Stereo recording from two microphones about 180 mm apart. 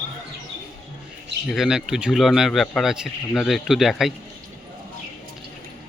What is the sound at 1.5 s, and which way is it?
A man's voice, centre (ahead or behind).